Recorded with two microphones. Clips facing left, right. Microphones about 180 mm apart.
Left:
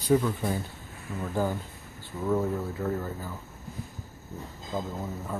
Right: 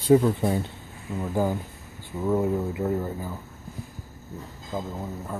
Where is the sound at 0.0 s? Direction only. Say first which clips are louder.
Right 5 dB; 25° right (ahead or behind).